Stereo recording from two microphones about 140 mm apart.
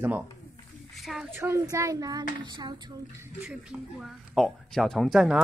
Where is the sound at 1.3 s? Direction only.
15° right (ahead or behind).